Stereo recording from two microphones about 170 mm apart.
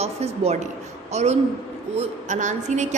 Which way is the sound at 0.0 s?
40° right (ahead or behind).